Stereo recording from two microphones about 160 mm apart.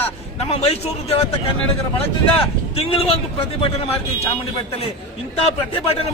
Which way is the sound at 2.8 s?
35° left (ahead or behind).